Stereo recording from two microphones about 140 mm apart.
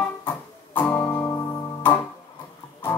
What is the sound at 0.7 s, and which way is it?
Music, 15° left (ahead or behind).